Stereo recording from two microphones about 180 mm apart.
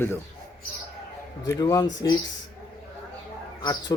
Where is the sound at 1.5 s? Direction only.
20° left (ahead or behind).